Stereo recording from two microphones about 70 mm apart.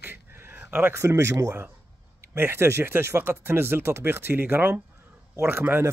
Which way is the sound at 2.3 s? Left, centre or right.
Right.